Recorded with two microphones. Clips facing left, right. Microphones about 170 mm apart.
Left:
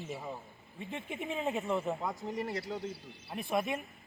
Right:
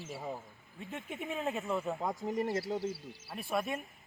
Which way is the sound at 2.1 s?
45° right (ahead or behind).